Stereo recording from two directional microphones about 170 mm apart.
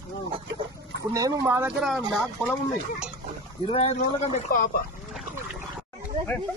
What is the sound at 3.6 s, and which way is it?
Speech, 40° left (ahead or behind).